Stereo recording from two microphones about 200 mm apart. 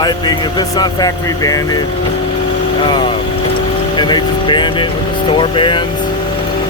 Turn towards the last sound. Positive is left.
turn(degrees=25)  # may be behind; listen again after turning